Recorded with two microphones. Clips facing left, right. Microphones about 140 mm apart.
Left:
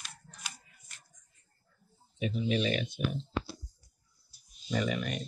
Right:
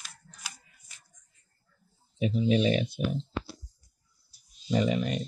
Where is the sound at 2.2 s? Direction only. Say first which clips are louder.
Right 5 dB; 35° right (ahead or behind).